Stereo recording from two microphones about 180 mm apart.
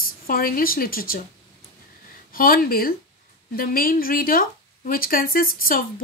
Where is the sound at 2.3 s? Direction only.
50° left (ahead or behind).